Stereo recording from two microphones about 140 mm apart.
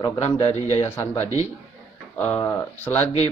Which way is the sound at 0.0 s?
25° left (ahead or behind).